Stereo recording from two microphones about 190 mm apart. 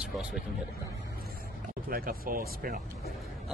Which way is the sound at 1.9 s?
50° right (ahead or behind).